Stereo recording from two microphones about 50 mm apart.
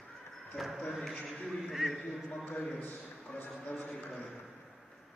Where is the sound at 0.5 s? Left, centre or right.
Centre.